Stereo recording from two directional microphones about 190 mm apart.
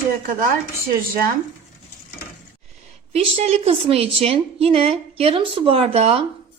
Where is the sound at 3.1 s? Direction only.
30° right (ahead or behind).